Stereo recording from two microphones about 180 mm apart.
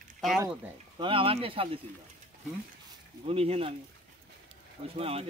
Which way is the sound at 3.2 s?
35° right (ahead or behind).